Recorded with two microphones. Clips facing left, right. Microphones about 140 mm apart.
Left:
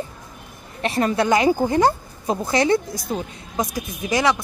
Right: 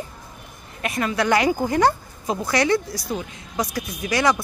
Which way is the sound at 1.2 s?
20° left (ahead or behind).